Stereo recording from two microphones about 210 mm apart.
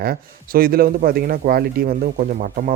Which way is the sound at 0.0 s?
45° right (ahead or behind).